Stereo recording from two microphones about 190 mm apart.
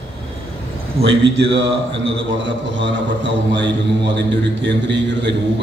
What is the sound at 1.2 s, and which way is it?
A man's voice, 70° right (ahead or behind).